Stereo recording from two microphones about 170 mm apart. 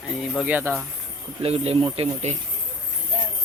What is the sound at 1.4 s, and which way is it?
Speech, 35° right (ahead or behind).